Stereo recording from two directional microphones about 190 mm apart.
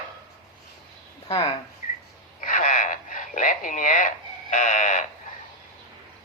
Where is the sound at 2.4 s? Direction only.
40° left (ahead or behind).